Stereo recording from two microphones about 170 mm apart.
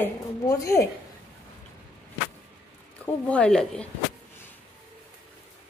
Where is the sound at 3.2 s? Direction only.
5° left (ahead or behind).